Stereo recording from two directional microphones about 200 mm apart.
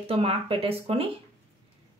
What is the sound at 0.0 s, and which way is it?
A woman's voice, 30° right (ahead or behind).